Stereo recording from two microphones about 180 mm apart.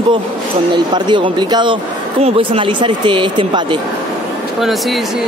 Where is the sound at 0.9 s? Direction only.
25° right (ahead or behind).